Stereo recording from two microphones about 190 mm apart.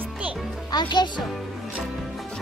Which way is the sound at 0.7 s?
25° left (ahead or behind).